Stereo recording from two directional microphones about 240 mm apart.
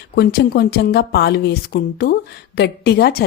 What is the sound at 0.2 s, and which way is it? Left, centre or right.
A woman's voice, left.